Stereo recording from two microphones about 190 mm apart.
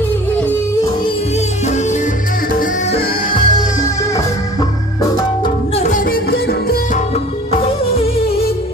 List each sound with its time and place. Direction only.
3.3 s music: 25° left (ahead or behind)
5.8 s music: 45° left (ahead or behind)